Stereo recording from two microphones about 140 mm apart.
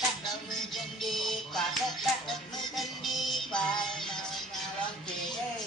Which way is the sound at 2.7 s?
Centre (ahead or behind).